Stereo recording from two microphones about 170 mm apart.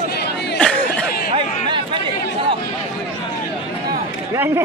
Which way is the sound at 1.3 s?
30° right (ahead or behind).